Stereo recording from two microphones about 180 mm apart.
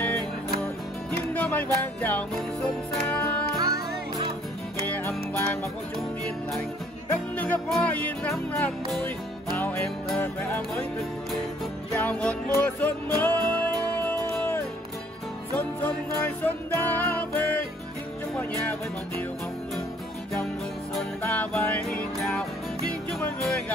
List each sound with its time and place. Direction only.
1.3 s music: 10° left (ahead or behind)
3.5 s music: 20° right (ahead or behind)
4.8 s music: 10° left (ahead or behind)
7.3 s music: 10° left (ahead or behind)
11.9 s music: 5° left (ahead or behind)
21.2 s music: 10° left (ahead or behind)